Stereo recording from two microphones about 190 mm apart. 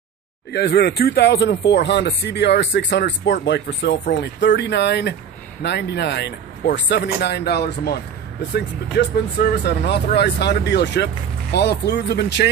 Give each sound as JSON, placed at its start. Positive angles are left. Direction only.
{"t": 0.5, "sound": "speech", "side_deg": 60}